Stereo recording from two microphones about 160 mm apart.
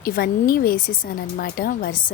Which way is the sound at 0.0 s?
65° left (ahead or behind).